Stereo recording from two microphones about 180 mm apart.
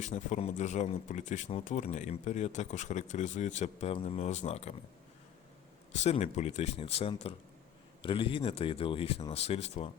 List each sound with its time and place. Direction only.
0.0 s speech: 40° left (ahead or behind)
5.9 s speech: 35° left (ahead or behind)